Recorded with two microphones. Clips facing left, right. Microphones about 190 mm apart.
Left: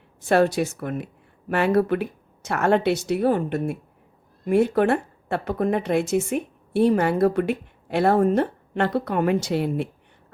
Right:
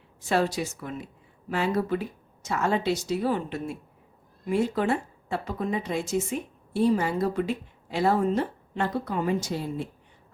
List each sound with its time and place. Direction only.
0.3 s speech: 60° left (ahead or behind)